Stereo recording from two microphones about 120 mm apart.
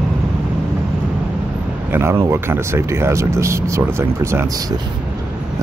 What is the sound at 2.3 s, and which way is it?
Speech, 20° right (ahead or behind).